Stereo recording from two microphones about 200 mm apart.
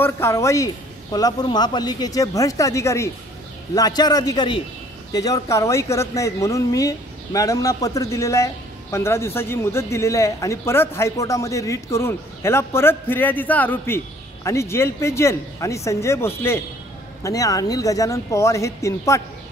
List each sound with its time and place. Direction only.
0.0 s a man's voice: 15° left (ahead or behind)